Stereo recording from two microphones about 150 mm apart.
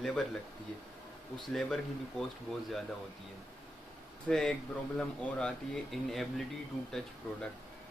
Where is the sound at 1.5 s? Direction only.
5° left (ahead or behind).